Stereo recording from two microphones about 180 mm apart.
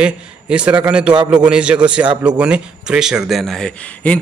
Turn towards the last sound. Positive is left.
turn(degrees=5)  # may be behind; listen again after turning